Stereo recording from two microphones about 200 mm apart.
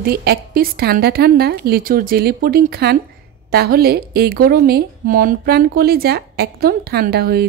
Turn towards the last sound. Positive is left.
turn(degrees=-50)  # may be behind; listen again after turning